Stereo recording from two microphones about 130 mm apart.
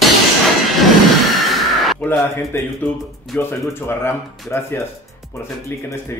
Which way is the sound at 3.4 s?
20° left (ahead or behind).